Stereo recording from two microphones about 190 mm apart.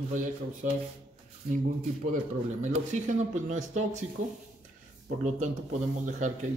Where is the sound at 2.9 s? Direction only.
40° right (ahead or behind).